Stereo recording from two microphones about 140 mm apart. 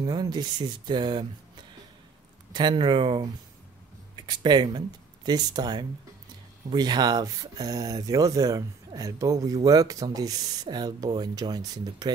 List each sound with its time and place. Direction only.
0.0 s speech: 30° right (ahead or behind)
2.5 s speech: 30° right (ahead or behind)